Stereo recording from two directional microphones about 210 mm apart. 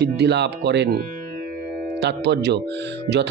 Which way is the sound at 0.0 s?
55° right (ahead or behind).